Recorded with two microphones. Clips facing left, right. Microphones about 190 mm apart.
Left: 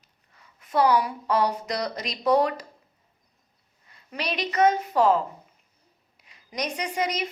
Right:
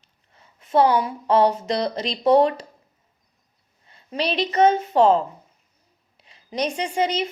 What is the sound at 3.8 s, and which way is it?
A woman's voice, 30° right (ahead or behind).